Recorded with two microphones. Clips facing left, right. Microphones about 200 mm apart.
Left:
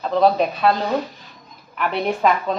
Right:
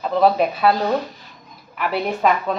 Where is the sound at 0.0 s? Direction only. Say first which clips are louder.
Even; 5° right (ahead or behind).